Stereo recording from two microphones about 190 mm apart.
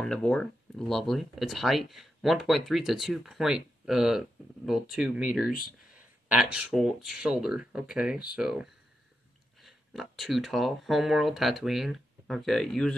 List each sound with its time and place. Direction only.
0.0 s speech: 5° left (ahead or behind)